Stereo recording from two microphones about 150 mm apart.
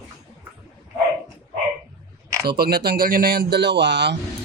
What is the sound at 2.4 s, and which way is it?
A man's voice, 90° right.